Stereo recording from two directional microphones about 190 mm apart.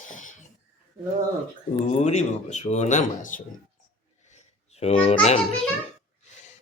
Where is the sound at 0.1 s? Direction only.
40° left (ahead or behind).